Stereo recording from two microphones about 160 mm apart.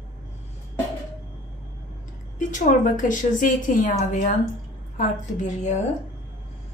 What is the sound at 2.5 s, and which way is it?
Speech, 55° left (ahead or behind).